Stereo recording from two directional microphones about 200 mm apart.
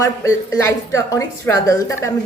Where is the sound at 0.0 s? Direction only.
15° left (ahead or behind).